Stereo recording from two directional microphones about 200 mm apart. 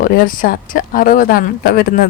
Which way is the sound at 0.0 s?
45° left (ahead or behind).